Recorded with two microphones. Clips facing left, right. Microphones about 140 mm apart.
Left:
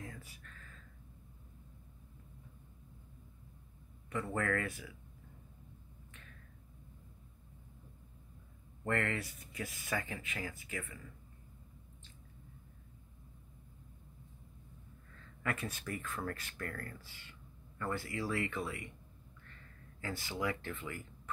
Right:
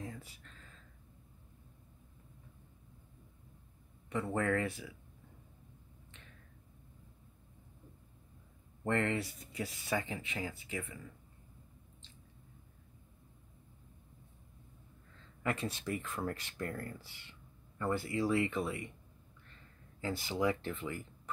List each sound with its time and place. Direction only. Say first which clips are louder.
0.0 s a sound: right 3 dB; 20° right (ahead or behind)
4.1 s speech: right 2 dB; 20° right (ahead or behind)
8.8 s speech: right 3 dB; 20° right (ahead or behind)
15.4 s speech: right 3 dB; 25° right (ahead or behind)
20.0 s speech: right 5 dB; 20° right (ahead or behind)